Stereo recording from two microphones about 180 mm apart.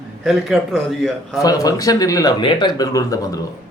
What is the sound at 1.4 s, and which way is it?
Speech, 20° left (ahead or behind).